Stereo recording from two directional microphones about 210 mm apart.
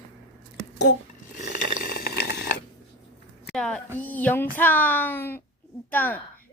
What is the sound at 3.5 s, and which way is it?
Speech, 5° left (ahead or behind).